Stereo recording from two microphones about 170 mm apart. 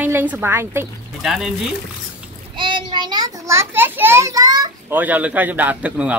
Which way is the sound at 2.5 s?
30° right (ahead or behind).